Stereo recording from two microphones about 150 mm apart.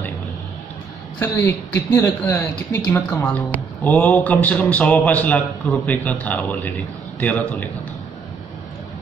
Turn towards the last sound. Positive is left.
turn(degrees=10)  # may be behind; listen again after turning